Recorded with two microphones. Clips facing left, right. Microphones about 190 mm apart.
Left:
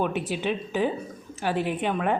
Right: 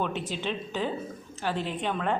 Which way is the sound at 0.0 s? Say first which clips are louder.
Left 4 dB; 15° left (ahead or behind).